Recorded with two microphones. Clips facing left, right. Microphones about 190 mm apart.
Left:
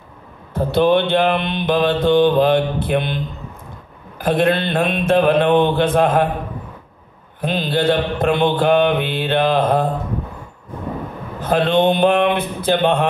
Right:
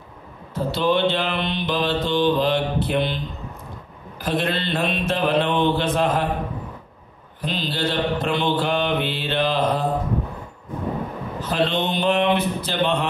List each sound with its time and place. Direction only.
0.6 s mantra: 55° left (ahead or behind)
4.2 s mantra: 55° left (ahead or behind)
7.4 s mantra: 55° left (ahead or behind)
11.4 s mantra: 55° left (ahead or behind)